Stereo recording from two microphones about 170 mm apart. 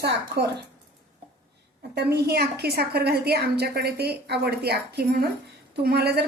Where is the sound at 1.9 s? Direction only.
75° right (ahead or behind).